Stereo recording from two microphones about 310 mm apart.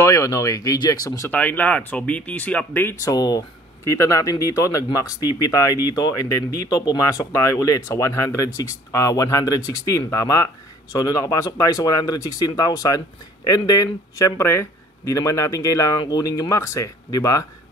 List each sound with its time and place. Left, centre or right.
0.0 s speech: centre